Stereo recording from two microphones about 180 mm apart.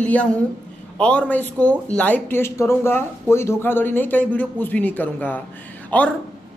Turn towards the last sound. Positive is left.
turn(degrees=10)  # may be behind; listen again after turning